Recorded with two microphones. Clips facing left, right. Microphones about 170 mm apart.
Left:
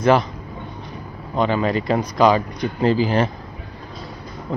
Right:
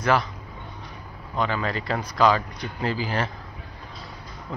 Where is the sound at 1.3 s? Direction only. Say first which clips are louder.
Left 7 dB; 20° left (ahead or behind).